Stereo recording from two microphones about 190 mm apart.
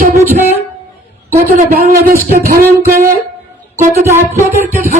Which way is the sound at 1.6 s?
45° right (ahead or behind).